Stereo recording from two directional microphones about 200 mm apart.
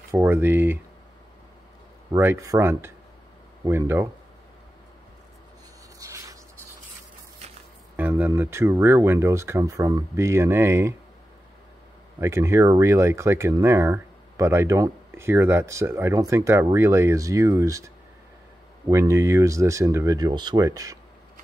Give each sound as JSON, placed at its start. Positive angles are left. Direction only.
{"t": 0.1, "sound": "speech", "side_deg": -10}
{"t": 2.1, "sound": "speech", "side_deg": -15}
{"t": 5.9, "sound": "writing", "side_deg": -15}
{"t": 7.9, "sound": "speech", "side_deg": -10}
{"t": 12.2, "sound": "speech", "side_deg": -15}